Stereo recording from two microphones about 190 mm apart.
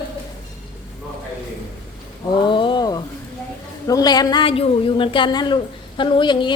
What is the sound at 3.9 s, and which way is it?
A woman's voice, 20° left (ahead or behind).